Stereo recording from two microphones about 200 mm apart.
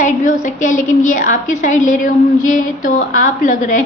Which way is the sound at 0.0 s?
40° left (ahead or behind).